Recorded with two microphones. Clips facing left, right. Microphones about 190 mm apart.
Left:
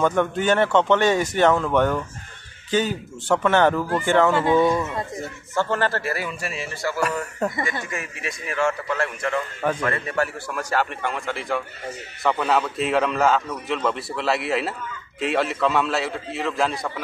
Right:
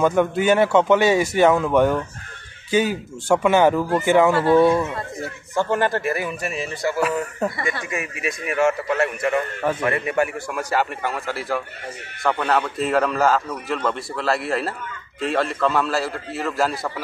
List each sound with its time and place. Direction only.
0.0 s a man's voice: 10° right (ahead or behind)
5.5 s speech: 15° right (ahead or behind)
7.0 s a man's voice: 5° right (ahead or behind)
8.3 s a man's voice: 20° right (ahead or behind); by 16.9 s centre (ahead or behind)